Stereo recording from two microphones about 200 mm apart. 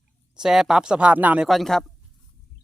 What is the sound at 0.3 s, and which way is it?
Speech, centre (ahead or behind).